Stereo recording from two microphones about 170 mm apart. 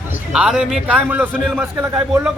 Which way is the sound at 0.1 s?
5° right (ahead or behind).